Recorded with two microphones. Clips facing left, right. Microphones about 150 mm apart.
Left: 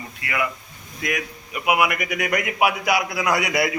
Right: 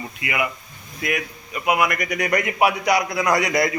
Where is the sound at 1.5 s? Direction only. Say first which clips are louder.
Even; 10° left (ahead or behind).